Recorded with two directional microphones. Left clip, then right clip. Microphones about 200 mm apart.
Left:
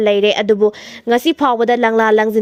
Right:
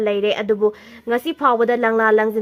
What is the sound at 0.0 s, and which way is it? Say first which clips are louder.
Speech: left 6 dB; 30° left (ahead or behind).